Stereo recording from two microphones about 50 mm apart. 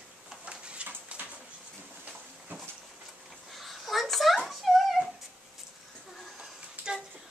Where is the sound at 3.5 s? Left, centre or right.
Centre.